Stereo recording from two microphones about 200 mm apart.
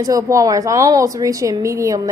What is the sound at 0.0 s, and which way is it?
A woman's voice, 15° right (ahead or behind).